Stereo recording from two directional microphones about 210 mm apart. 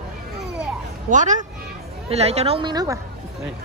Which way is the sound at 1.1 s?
35° right (ahead or behind).